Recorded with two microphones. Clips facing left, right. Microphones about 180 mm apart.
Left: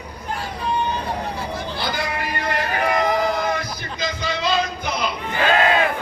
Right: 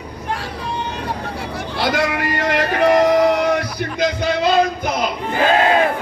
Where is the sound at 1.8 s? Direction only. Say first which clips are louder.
Right 9 dB; 85° right; by 5.1 s 50° right (ahead or behind).